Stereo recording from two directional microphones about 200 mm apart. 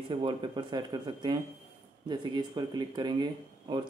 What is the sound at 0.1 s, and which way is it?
Speech, 25° right (ahead or behind).